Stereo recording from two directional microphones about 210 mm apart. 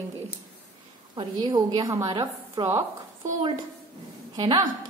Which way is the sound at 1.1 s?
20° right (ahead or behind).